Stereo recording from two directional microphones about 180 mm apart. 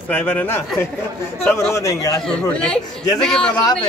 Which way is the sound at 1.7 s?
20° left (ahead or behind).